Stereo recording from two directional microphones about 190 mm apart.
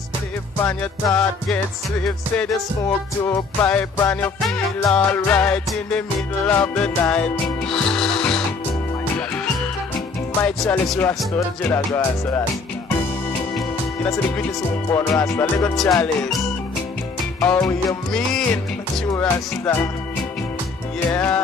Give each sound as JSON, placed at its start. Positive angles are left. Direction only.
{"t": 1.0, "sound": "music", "side_deg": 5}
{"t": 10.4, "sound": "music", "side_deg": 5}
{"t": 14.1, "sound": "music", "side_deg": 5}
{"t": 17.4, "sound": "music", "side_deg": 10}
{"t": 18.1, "sound": "music", "side_deg": 5}
{"t": 21.0, "sound": "music", "side_deg": 10}